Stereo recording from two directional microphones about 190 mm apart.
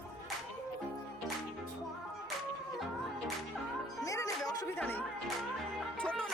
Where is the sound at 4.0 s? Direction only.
15° left (ahead or behind).